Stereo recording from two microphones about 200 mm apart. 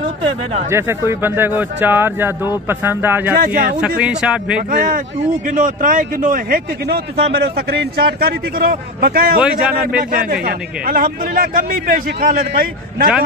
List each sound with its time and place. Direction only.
0.7 s speech: 10° right (ahead or behind)
3.3 s speech: 45° right (ahead or behind)
4.0 s a man's voice: 5° right (ahead or behind)
4.6 s speech: 45° right (ahead or behind)
8.2 s speech: 50° right (ahead or behind)
9.4 s a man's voice: 5° right (ahead or behind)
10.1 s speech: 45° right (ahead or behind)